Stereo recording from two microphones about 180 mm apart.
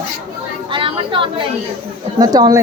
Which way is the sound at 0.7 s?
30° right (ahead or behind).